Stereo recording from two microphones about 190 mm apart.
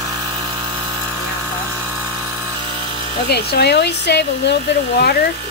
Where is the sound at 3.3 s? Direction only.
60° left (ahead or behind).